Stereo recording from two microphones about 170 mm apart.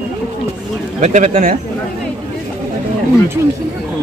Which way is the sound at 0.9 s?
45° right (ahead or behind).